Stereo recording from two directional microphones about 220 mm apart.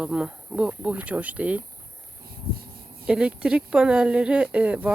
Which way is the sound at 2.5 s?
45° right (ahead or behind).